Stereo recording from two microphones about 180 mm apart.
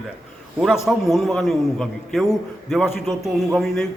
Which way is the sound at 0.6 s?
Centre (ahead or behind).